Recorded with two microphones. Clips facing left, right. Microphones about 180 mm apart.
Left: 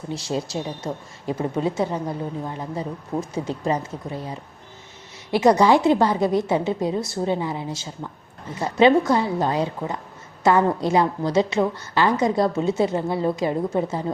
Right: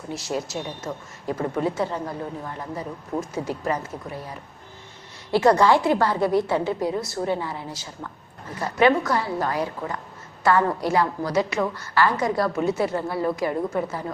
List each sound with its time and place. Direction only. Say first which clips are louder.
0.1 s speech: left 2 dB; 30° left (ahead or behind)
1.3 s a woman's voice: left 1 dB; 20° left (ahead or behind)